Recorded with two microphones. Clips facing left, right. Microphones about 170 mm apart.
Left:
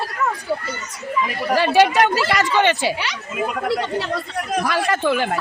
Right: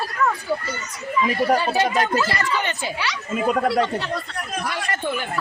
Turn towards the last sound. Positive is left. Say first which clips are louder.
# left 7 dB
turn(degrees=90)